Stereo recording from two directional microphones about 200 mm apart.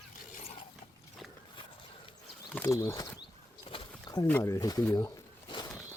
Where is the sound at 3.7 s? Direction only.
25° left (ahead or behind).